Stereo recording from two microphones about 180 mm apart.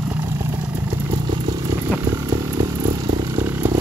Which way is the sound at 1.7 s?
15° right (ahead or behind).